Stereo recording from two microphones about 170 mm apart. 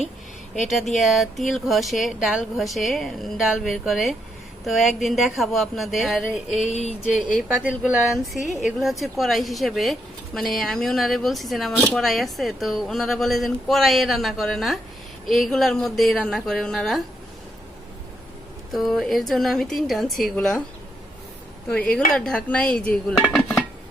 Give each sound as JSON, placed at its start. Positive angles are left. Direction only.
{"t": 0.9, "sound": "speech", "side_deg": 0}
{"t": 6.7, "sound": "a sound", "side_deg": 45}
{"t": 7.4, "sound": "speech", "side_deg": -5}
{"t": 18.7, "sound": "speech", "side_deg": 0}
{"t": 21.7, "sound": "speech", "side_deg": 5}